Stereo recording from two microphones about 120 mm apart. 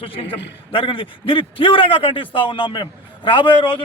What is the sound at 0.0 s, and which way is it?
A man's voice, 50° left (ahead or behind).